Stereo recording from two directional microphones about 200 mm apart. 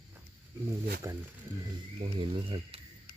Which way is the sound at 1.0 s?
15° right (ahead or behind).